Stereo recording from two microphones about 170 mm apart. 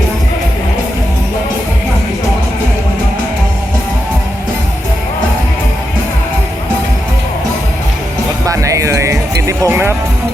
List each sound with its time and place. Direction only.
8.4 s music: 20° right (ahead or behind)